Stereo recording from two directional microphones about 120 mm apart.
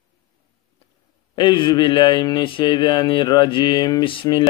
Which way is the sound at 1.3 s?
40° left (ahead or behind).